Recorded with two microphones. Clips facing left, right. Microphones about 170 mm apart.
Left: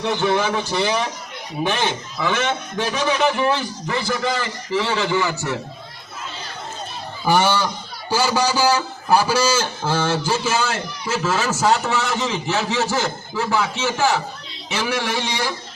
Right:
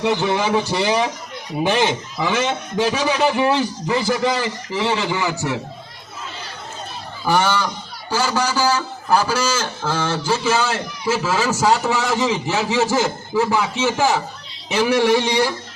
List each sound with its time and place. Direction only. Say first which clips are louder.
0.0 s a man's voice: right 1 dB; 15° right (ahead or behind)
7.3 s a man's voice: left 1 dB; 5° left (ahead or behind)
11.1 s a man's voice: right 2 dB; 10° right (ahead or behind)